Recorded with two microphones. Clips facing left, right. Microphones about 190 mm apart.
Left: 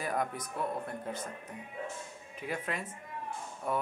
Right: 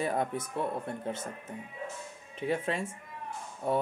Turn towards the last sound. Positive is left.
turn(degrees=-30)  # may be behind; listen again after turning